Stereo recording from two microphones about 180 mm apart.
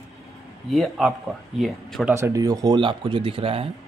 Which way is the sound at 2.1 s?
15° right (ahead or behind).